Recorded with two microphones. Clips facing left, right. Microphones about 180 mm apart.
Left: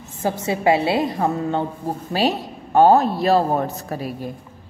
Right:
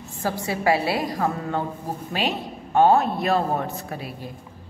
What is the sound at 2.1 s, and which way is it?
A man's voice, 40° left (ahead or behind).